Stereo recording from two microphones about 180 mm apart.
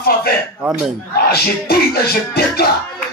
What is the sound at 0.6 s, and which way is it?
Speech, 5° right (ahead or behind).